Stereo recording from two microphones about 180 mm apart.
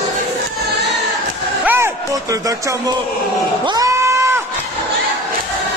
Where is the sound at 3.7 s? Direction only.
20° right (ahead or behind).